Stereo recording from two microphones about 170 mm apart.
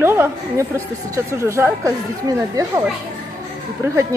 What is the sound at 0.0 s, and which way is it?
Speech, 15° right (ahead or behind).